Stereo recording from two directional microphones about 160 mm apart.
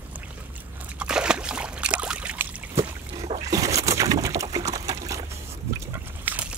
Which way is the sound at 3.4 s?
20° right (ahead or behind).